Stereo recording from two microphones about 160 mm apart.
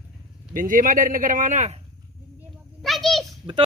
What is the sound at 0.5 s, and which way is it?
A man's voice, 55° right (ahead or behind).